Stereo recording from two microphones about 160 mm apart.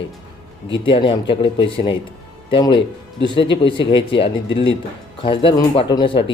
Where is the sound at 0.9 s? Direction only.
30° left (ahead or behind).